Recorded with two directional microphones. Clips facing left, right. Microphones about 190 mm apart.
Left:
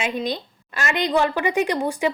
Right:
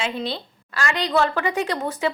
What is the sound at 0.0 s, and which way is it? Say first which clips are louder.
A woman's voice: left 2 dB; 15° left (ahead or behind).